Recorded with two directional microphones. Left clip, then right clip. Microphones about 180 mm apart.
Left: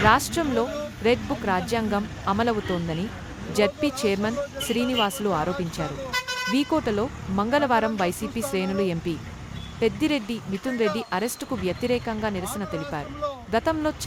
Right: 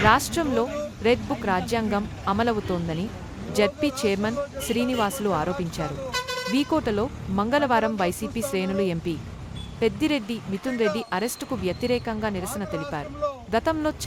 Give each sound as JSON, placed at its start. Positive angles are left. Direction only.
{"t": 0.0, "sound": "speech", "side_deg": 0}